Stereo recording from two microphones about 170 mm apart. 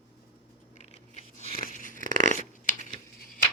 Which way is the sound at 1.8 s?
50° left (ahead or behind).